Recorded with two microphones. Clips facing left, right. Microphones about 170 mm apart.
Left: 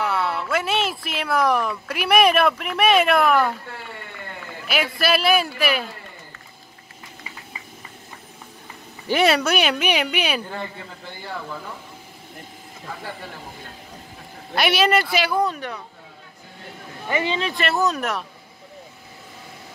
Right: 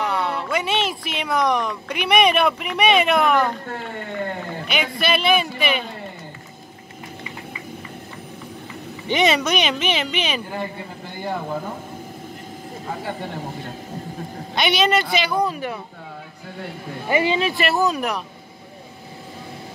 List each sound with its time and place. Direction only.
0.0 s speech: 5° left (ahead or behind)
3.6 s speech: 45° right (ahead or behind)
4.6 s speech: 5° left (ahead or behind)
9.0 s speech: 5° left (ahead or behind)
14.5 s speech: 5° left (ahead or behind)
17.1 s speech: 10° right (ahead or behind)